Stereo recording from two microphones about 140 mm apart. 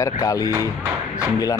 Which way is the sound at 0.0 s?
25° left (ahead or behind).